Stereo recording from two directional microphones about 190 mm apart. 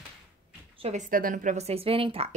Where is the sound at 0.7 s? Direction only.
35° right (ahead or behind).